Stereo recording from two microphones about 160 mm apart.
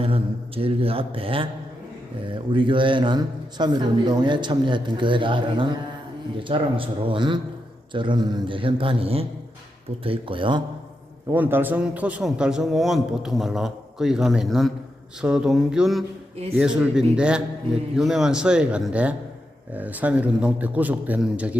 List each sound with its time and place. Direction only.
0.0 s speech: 35° right (ahead or behind)
11.3 s a man's voice: 15° right (ahead or behind)